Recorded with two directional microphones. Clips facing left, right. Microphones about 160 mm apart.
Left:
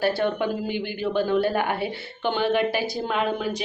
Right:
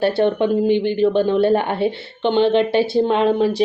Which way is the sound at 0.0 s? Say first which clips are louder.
Right 6 dB; 25° right (ahead or behind).